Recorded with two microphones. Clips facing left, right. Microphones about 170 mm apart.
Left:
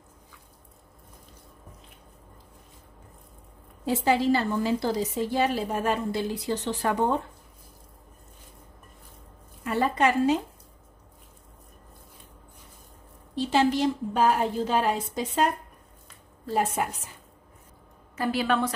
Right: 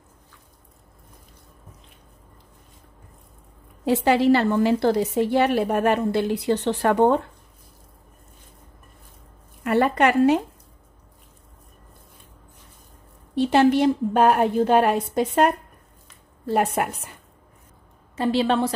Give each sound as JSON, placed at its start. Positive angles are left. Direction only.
{"t": 3.8, "sound": "a woman's voice", "side_deg": -70}
{"t": 9.6, "sound": "a woman's voice", "side_deg": -65}
{"t": 13.3, "sound": "a woman's voice", "side_deg": -60}
{"t": 18.1, "sound": "a woman's voice", "side_deg": -25}